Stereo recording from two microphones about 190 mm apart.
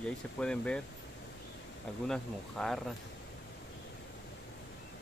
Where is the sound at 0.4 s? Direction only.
5° left (ahead or behind).